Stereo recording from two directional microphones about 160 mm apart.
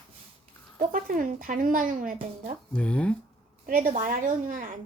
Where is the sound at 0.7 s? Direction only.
60° right (ahead or behind).